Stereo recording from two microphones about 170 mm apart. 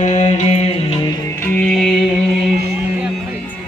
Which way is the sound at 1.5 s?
5° left (ahead or behind).